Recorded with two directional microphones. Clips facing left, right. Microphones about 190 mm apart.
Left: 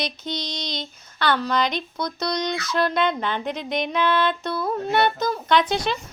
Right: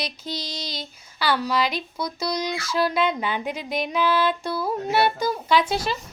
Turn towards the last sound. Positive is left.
turn(degrees=-5)  # may be behind; listen again after turning